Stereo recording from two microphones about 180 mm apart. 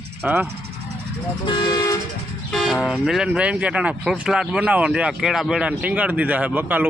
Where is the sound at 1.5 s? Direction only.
25° left (ahead or behind).